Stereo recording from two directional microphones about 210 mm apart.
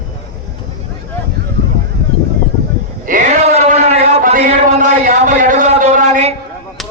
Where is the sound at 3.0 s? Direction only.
35° right (ahead or behind).